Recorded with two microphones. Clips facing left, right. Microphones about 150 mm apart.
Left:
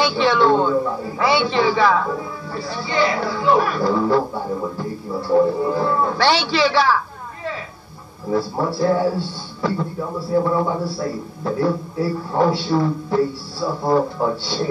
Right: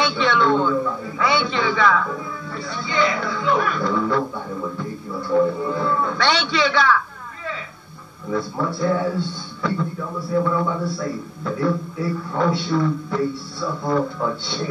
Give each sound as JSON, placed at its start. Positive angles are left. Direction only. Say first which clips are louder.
{"t": 0.0, "sound": "a man's voice", "louder": "left 3 dB", "side_deg": 30}
{"t": 8.3, "sound": "a man's voice", "louder": "left 3 dB", "side_deg": 30}